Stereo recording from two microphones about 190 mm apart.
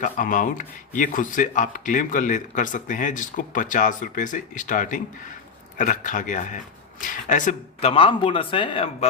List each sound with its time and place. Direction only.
0.0 s speech: 45° left (ahead or behind)